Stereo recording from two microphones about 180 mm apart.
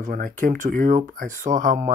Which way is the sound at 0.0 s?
50° right (ahead or behind).